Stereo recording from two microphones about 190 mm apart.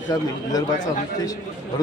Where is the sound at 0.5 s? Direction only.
20° left (ahead or behind).